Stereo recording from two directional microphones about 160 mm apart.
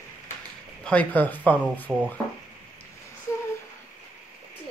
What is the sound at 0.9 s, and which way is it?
Speech, 10° left (ahead or behind).